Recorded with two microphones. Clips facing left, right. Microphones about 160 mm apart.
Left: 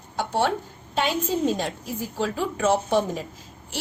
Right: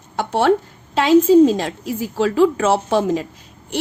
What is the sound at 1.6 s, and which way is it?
A woman's voice, 90° right.